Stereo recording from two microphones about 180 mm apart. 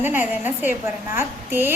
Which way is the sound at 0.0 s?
10° right (ahead or behind).